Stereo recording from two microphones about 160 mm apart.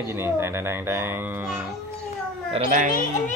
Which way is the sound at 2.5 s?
50° right (ahead or behind).